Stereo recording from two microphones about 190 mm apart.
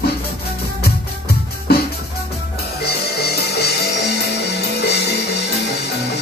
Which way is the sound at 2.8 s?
60° left (ahead or behind).